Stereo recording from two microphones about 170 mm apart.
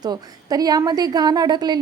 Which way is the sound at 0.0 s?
25° right (ahead or behind).